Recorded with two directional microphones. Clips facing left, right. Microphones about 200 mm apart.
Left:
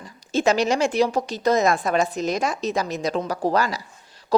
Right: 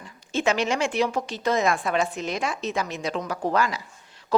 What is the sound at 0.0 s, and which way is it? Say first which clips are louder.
A woman's voice: left 4 dB; 40° left (ahead or behind).